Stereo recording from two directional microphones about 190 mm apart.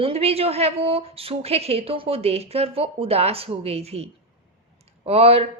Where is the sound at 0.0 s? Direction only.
30° right (ahead or behind).